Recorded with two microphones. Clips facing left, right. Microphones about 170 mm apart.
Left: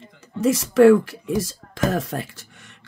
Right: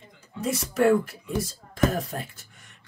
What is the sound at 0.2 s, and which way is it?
Speech, 90° left.